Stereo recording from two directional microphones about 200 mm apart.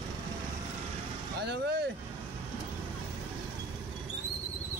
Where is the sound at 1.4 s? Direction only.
55° right (ahead or behind).